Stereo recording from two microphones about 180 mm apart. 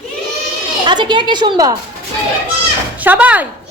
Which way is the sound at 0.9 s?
25° right (ahead or behind).